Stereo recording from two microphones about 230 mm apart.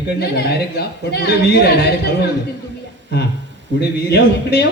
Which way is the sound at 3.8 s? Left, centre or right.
Left.